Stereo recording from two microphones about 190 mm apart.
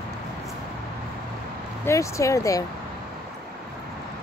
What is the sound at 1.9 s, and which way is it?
Speech, 15° left (ahead or behind).